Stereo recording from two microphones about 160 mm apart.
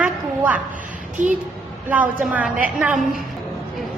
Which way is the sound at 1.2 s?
50° right (ahead or behind).